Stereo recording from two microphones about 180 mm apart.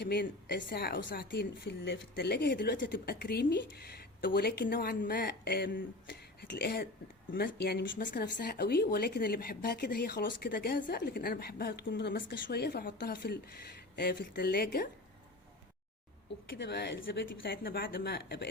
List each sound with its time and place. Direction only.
0.0 s a woman's voice: 65° left (ahead or behind)
8.1 s a woman's voice: 55° left (ahead or behind)
16.5 s a woman's voice: 70° left (ahead or behind)